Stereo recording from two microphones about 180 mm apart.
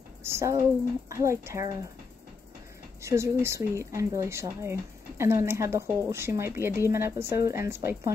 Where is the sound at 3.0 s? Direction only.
15° right (ahead or behind).